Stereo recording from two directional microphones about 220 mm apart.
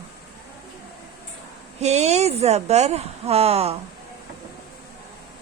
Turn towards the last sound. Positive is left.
turn(degrees=-30)  # may be behind; listen again after turning